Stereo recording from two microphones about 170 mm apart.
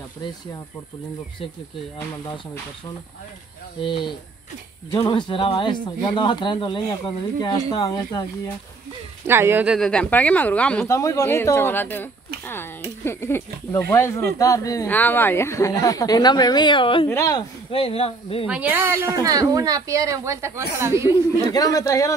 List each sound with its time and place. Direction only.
3.8 s speech: 30° left (ahead or behind)
9.2 s speech: 15° right (ahead or behind)
9.8 s speech: 5° left (ahead or behind)
10.9 s speech: 20° left (ahead or behind)
17.1 s speech: 20° left (ahead or behind)
18.5 s a woman's voice: 10° right (ahead or behind)
21.5 s speech: 20° left (ahead or behind)